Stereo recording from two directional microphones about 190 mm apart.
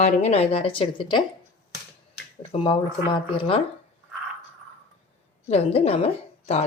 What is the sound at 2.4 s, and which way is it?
Speech, 30° left (ahead or behind).